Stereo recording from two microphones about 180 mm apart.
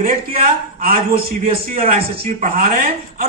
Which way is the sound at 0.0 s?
50° right (ahead or behind).